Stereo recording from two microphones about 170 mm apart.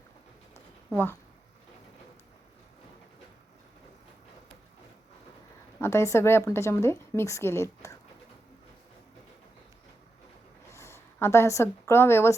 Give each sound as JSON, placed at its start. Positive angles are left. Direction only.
{"t": 5.8, "sound": "a woman's voice", "side_deg": 15}
{"t": 10.7, "sound": "a woman's voice", "side_deg": 15}